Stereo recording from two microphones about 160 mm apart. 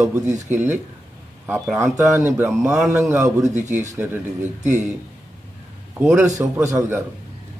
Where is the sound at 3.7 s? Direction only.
45° right (ahead or behind).